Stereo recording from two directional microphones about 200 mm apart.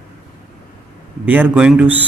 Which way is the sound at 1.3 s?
10° right (ahead or behind).